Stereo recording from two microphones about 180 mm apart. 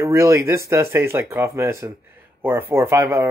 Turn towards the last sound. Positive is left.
turn(degrees=-15)  # may be behind; listen again after turning